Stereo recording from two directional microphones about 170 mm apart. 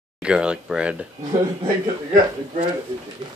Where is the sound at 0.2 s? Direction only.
5° right (ahead or behind).